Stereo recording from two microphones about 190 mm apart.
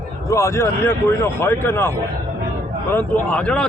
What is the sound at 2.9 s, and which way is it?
Speech, 10° left (ahead or behind).